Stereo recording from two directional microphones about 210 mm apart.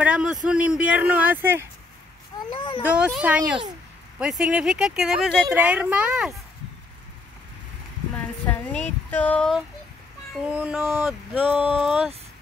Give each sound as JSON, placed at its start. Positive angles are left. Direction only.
{"t": 0.0, "sound": "speech", "side_deg": -5}
{"t": 2.5, "sound": "speech", "side_deg": 25}
{"t": 2.8, "sound": "speech", "side_deg": -5}
{"t": 8.5, "sound": "a sound", "side_deg": 5}
{"t": 10.5, "sound": "speech", "side_deg": -5}